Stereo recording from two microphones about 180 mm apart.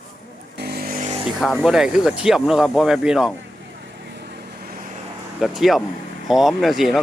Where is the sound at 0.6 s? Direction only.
60° right (ahead or behind).